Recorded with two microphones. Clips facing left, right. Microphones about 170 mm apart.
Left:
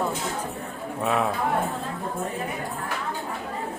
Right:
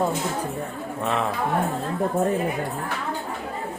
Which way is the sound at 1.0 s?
5° left (ahead or behind).